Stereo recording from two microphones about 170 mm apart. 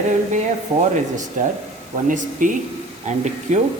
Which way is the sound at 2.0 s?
50° right (ahead or behind).